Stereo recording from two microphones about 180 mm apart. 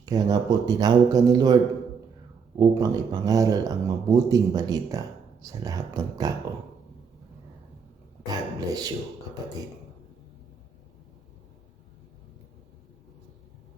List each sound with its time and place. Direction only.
0.0 s speech: 20° right (ahead or behind)
2.6 s speech: 20° right (ahead or behind)
8.2 s speech: 20° right (ahead or behind)